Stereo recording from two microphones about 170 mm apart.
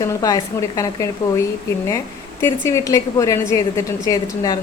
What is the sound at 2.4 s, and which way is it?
A woman's voice, 15° left (ahead or behind).